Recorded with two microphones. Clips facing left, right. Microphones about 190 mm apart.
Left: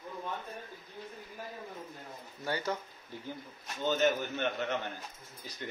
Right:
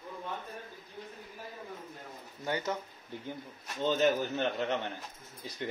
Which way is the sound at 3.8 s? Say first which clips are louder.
Right 2 dB; 30° right (ahead or behind).